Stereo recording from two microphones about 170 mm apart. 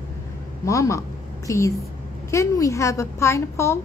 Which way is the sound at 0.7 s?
15° left (ahead or behind).